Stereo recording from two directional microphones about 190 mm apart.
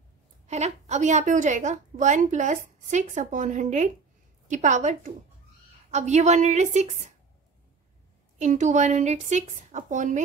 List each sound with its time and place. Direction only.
0.5 s a woman's voice: 35° right (ahead or behind)
8.4 s a woman's voice: 40° right (ahead or behind)